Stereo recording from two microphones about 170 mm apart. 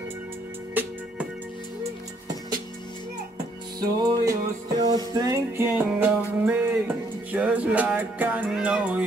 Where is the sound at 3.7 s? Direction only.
25° right (ahead or behind).